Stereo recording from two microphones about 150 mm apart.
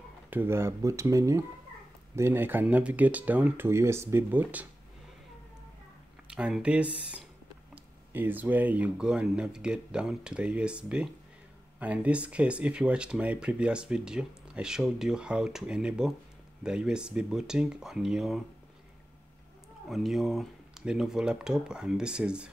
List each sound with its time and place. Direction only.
0.3 s speech: 15° right (ahead or behind)
6.2 s speech: 5° right (ahead or behind)
19.9 s speech: centre (ahead or behind)